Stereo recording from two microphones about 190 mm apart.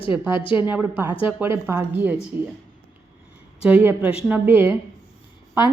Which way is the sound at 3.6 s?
10° right (ahead or behind).